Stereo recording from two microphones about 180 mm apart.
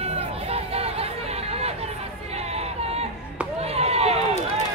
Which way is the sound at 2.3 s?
35° right (ahead or behind).